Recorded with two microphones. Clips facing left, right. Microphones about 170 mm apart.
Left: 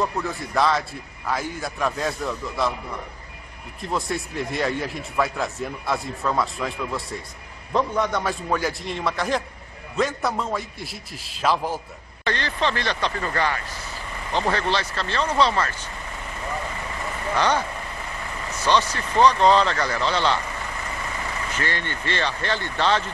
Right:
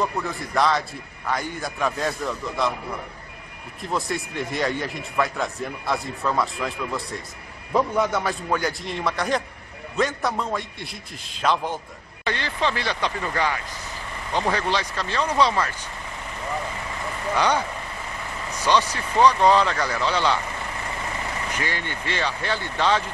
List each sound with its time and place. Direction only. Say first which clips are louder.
0.0 s speech: even; centre (ahead or behind)
3.8 s speech: even; centre (ahead or behind)
12.3 s speech: left 1 dB; 10° right (ahead or behind)
17.4 s speech: even; 10° right (ahead or behind)
21.5 s speech: left 1 dB; 10° right (ahead or behind)